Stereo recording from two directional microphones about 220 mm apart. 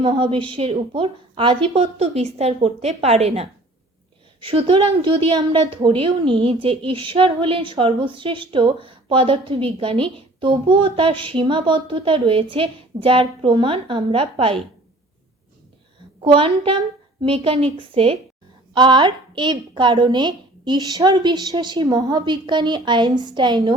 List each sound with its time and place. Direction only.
0.0 s a woman's voice: 25° right (ahead or behind)
16.2 s a woman's voice: 25° right (ahead or behind)